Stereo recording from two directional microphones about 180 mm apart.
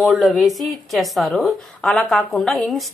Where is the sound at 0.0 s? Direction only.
Centre (ahead or behind).